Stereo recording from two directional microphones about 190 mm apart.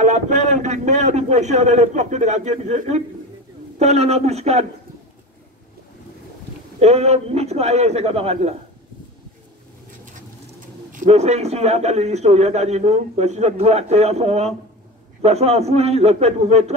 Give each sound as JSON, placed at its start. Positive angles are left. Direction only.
{"t": 0.0, "sound": "a man's voice", "side_deg": -40}
{"t": 6.8, "sound": "a man's voice", "side_deg": -35}
{"t": 10.9, "sound": "a man's voice", "side_deg": -40}